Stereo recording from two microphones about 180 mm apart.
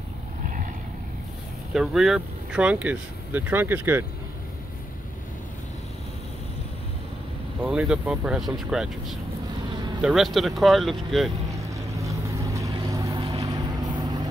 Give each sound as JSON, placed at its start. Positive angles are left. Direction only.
{"t": 1.7, "sound": "speech", "side_deg": 0}
{"t": 7.6, "sound": "speech", "side_deg": -5}
{"t": 11.5, "sound": "vehicle", "side_deg": -15}